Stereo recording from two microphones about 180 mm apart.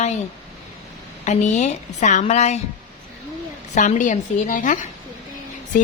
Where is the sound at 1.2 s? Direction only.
40° left (ahead or behind).